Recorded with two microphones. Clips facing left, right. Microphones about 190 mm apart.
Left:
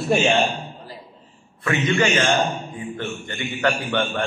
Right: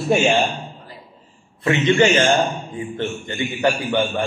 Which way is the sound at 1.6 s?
30° right (ahead or behind).